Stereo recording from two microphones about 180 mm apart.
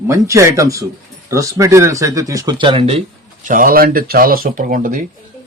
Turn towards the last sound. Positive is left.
turn(degrees=-50)  # may be behind; listen again after turning